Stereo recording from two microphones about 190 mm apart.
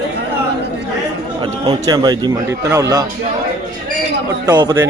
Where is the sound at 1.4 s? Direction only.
20° right (ahead or behind).